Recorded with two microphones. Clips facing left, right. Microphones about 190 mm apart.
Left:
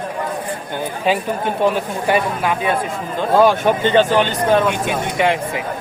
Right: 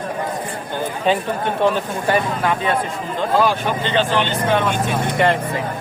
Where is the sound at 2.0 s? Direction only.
10° left (ahead or behind).